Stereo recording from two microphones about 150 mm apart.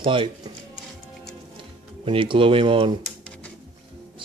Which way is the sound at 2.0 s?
35° right (ahead or behind).